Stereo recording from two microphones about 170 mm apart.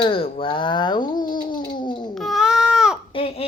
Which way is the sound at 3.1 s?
35° left (ahead or behind).